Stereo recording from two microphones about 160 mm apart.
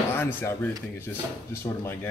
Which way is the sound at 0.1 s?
15° left (ahead or behind).